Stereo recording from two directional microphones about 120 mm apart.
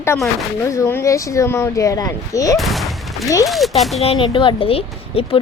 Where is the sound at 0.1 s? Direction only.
20° left (ahead or behind).